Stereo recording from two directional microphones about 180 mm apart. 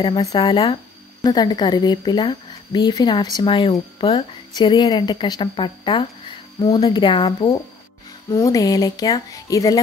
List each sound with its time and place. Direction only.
0.0 s a woman's voice: 20° left (ahead or behind)